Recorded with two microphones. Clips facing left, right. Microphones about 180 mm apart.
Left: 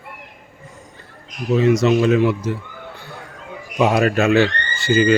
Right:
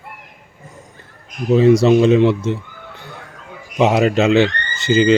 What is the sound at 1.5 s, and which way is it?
Speech, 35° right (ahead or behind).